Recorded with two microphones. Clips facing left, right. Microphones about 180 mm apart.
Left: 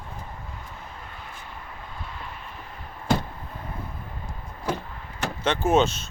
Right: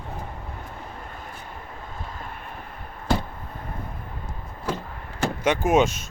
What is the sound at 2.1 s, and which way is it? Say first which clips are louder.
Vehicle: right 2 dB; 50° right (ahead or behind).